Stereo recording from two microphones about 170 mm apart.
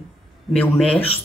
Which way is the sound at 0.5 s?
5° left (ahead or behind).